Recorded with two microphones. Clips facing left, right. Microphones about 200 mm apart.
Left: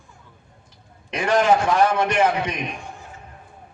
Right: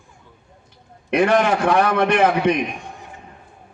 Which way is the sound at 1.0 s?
60° right (ahead or behind).